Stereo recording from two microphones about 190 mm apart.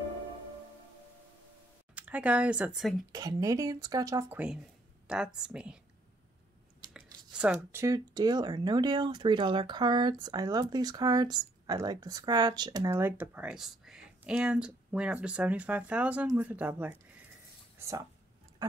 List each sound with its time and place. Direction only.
2.0 s speech: 5° right (ahead or behind)
3.1 s speech: 20° right (ahead or behind)
6.8 s speech: 5° right (ahead or behind)